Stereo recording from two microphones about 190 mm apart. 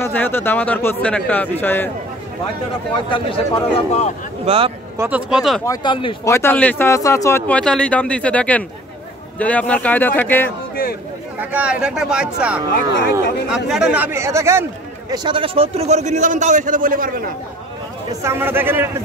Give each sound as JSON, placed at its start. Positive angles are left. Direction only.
{"t": 0.0, "sound": "speech", "side_deg": 10}
{"t": 3.1, "sound": "a man's voice", "side_deg": 25}
{"t": 4.5, "sound": "a man's voice", "side_deg": -30}
{"t": 4.9, "sound": "speech", "side_deg": -10}
{"t": 5.7, "sound": "a man's voice", "side_deg": 25}
{"t": 6.2, "sound": "speech", "side_deg": 15}
{"t": 11.3, "sound": "speech", "side_deg": -5}
{"t": 18.2, "sound": "a man's voice", "side_deg": -10}